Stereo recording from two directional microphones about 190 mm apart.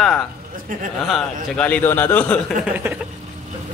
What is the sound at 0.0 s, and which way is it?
A man's voice, 5° left (ahead or behind).